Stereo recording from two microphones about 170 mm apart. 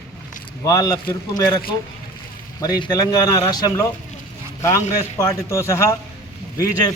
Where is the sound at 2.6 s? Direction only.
25° left (ahead or behind).